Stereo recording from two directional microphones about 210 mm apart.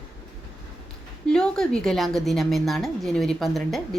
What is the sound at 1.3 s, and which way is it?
A woman's voice, 5° left (ahead or behind).